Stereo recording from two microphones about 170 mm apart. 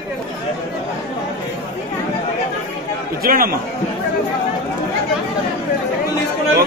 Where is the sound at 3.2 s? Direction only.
60° right (ahead or behind).